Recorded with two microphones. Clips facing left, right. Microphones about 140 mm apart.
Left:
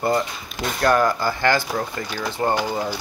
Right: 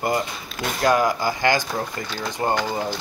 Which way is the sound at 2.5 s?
10° left (ahead or behind).